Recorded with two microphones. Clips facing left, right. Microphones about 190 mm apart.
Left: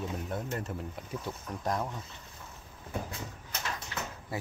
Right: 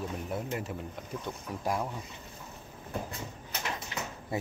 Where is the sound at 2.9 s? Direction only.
Centre (ahead or behind).